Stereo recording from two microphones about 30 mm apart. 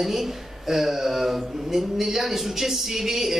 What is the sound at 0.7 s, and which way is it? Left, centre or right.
Speech, centre.